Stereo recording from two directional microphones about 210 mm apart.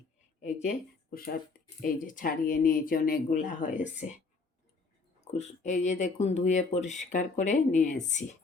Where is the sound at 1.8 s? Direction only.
40° left (ahead or behind).